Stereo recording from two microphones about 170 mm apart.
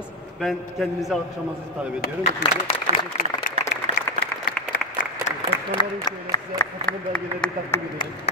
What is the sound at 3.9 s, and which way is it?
Applause, 45° right (ahead or behind).